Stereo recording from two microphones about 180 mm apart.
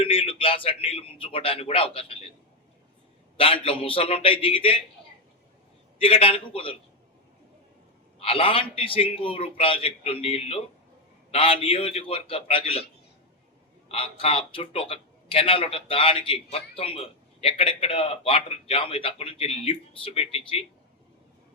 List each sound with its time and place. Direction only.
0.0 s a man's voice: 30° left (ahead or behind)
3.3 s a man's voice: 30° left (ahead or behind)
6.0 s a man's voice: 30° left (ahead or behind)
8.2 s a man's voice: 30° left (ahead or behind)
13.8 s a man's voice: 30° left (ahead or behind)